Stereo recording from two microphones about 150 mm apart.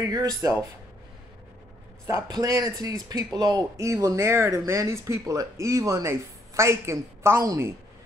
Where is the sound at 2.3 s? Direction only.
25° right (ahead or behind).